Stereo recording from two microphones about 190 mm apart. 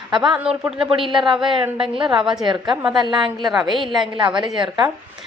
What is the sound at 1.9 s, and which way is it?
Speech, 25° right (ahead or behind).